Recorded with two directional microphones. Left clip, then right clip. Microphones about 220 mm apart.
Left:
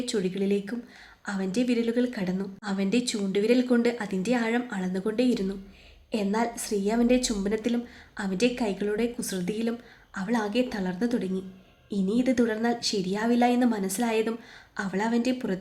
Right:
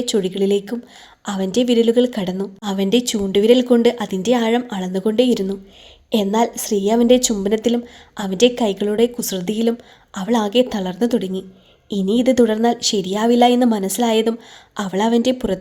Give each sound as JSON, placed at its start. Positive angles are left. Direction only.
{"t": 0.0, "sound": "a woman's voice", "side_deg": -30}